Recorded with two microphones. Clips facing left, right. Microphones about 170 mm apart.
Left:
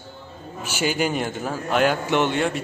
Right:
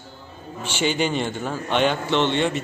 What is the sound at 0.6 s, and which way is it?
A man's voice, 10° left (ahead or behind).